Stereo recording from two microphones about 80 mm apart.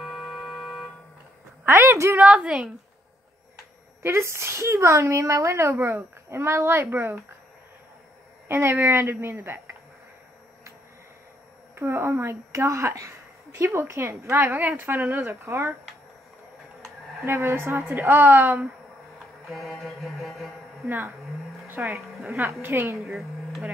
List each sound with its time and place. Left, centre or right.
0.0 s a sound: centre
1.6 s a woman's voice: right
2.1 s a woman's voice: centre
4.0 s speech: right
8.5 s speech: right
11.7 s a woman's voice: right
17.2 s a woman's voice: right
19.5 s mantra: centre
20.8 s a woman's voice: right
23.0 s a sound: centre